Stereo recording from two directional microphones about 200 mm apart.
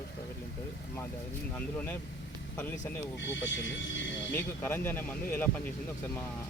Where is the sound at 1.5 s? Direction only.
10° left (ahead or behind).